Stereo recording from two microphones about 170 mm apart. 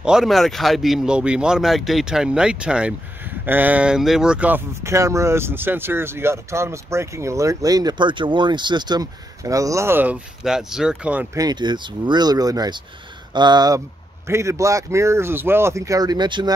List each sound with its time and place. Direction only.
0.0 s speech: 5° right (ahead or behind)
11.3 s speech: 25° right (ahead or behind)